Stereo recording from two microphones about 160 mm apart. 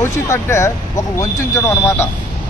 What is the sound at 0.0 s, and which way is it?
Speech, 15° left (ahead or behind).